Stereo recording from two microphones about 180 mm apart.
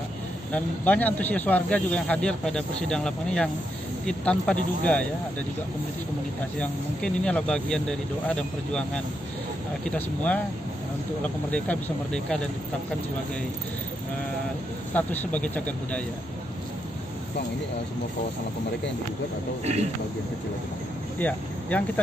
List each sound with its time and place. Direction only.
0.5 s speech: 10° left (ahead or behind)
6.6 s speech: 5° left (ahead or behind)
11.5 s speech: 5° left (ahead or behind)
15.0 s speech: 10° left (ahead or behind)
19.6 s speech: 35° right (ahead or behind)
21.2 s speech: 10° left (ahead or behind)